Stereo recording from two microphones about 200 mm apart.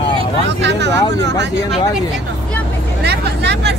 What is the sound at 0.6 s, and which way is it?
Speech, 60° right (ahead or behind).